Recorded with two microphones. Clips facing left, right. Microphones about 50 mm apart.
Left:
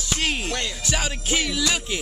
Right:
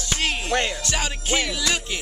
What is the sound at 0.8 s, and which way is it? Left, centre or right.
Music, centre.